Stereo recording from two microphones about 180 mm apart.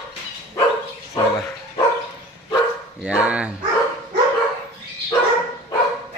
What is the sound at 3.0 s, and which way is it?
Speech, 5° right (ahead or behind).